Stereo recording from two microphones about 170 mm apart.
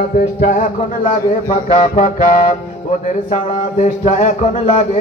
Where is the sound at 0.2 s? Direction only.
50° left (ahead or behind).